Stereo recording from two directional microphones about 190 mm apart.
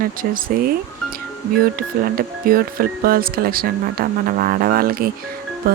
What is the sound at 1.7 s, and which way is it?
Speech, 50° right (ahead or behind).